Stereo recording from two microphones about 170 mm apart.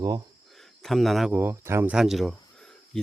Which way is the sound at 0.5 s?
Centre (ahead or behind).